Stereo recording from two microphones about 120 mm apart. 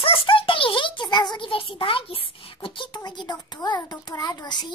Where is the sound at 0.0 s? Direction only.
50° left (ahead or behind).